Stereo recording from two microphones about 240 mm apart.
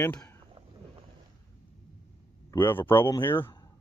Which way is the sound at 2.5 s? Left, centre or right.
Centre.